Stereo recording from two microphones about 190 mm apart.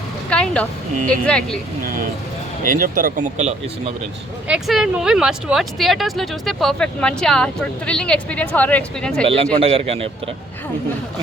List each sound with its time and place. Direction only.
0.3 s a sound: 5° left (ahead or behind)
1.0 s speech: 5° left (ahead or behind)
1.8 s speech: 50° right (ahead or behind)
4.4 s speech: 5° right (ahead or behind)
9.2 s a man's voice: 30° right (ahead or behind)